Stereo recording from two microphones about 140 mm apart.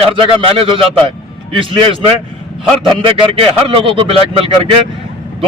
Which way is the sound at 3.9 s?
35° right (ahead or behind).